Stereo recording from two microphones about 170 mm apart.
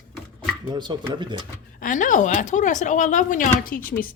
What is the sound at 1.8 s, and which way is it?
A woman's voice, 50° left (ahead or behind).